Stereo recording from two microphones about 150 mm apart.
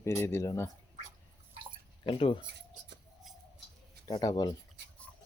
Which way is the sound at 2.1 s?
35° left (ahead or behind).